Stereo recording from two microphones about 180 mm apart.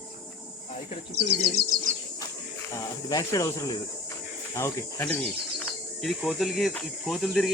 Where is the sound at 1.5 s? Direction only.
55° right (ahead or behind).